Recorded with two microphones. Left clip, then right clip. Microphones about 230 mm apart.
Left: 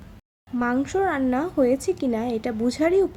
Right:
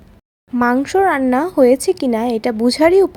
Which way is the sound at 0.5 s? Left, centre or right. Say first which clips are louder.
Right 9 dB; right.